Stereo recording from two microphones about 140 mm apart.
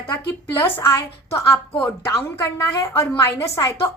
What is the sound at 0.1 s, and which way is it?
A woman's voice, 15° left (ahead or behind).